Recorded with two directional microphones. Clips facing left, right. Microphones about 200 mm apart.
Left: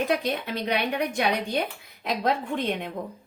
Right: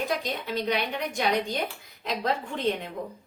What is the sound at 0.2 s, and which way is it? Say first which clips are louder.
A woman's voice: left 2 dB; 60° left (ahead or behind).